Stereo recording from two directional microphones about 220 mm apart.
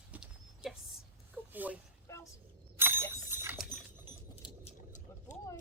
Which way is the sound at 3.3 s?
10° right (ahead or behind).